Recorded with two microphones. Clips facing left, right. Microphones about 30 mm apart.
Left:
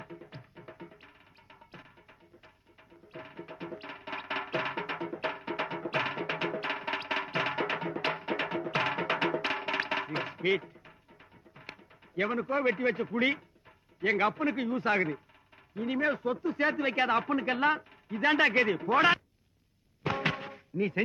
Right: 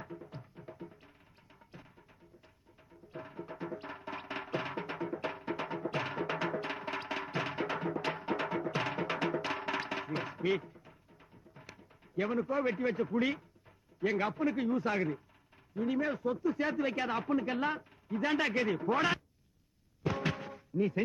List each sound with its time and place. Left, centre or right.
0.0 s music: centre
0.3 s music: left
4.0 s music: left
13.1 s speech: left
20.1 s music: left